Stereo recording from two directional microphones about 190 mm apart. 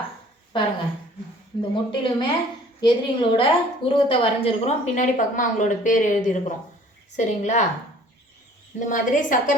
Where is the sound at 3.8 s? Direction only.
30° left (ahead or behind).